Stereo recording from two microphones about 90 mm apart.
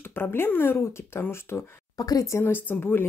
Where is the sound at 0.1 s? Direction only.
25° left (ahead or behind).